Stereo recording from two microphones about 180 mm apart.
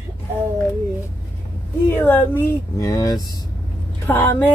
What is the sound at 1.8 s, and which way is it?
Speech, 10° left (ahead or behind).